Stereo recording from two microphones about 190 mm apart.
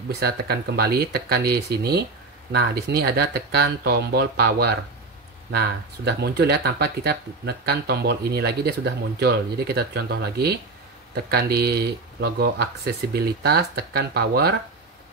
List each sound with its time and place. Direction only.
0.2 s speech: 55° right (ahead or behind)